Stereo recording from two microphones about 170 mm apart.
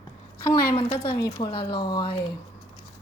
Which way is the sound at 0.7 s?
35° left (ahead or behind).